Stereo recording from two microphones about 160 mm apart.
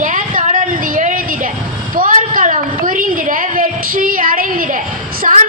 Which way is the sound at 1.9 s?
60° right (ahead or behind).